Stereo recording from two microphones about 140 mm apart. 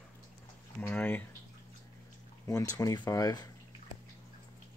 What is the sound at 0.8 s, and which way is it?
Speech, 10° left (ahead or behind).